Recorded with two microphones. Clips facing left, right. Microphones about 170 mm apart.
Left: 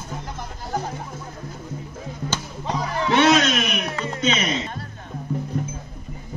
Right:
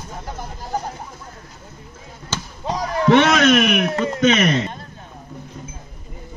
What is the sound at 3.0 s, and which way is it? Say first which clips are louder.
A man's voice: right 4 dB; 65° right (ahead or behind).